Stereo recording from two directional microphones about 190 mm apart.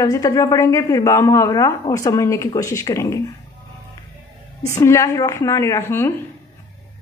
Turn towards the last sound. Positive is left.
turn(degrees=10)  # may be behind; listen again after turning